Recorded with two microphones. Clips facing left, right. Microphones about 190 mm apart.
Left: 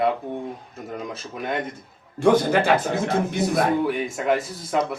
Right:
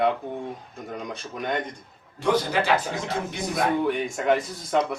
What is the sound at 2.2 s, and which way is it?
A man's voice, 50° left (ahead or behind).